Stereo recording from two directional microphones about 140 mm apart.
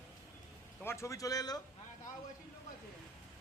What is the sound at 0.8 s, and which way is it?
Speech, 20° left (ahead or behind).